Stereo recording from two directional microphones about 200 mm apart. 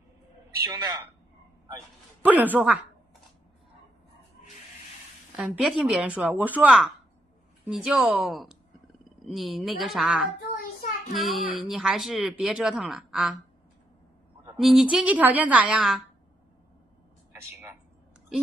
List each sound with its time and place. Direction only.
2.2 s speech: 10° right (ahead or behind)
5.3 s speech: centre (ahead or behind)
10.5 s child singing: 40° left (ahead or behind)
11.1 s speech: centre (ahead or behind)
14.6 s speech: centre (ahead or behind)